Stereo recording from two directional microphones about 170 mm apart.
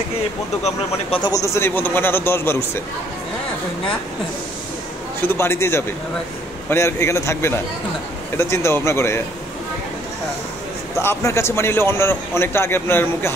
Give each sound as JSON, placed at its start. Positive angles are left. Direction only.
{"t": 0.7, "sound": "speech", "side_deg": 35}
{"t": 1.3, "sound": "a man's voice", "side_deg": 15}
{"t": 5.2, "sound": "a man's voice", "side_deg": 15}
{"t": 11.0, "sound": "a man's voice", "side_deg": 15}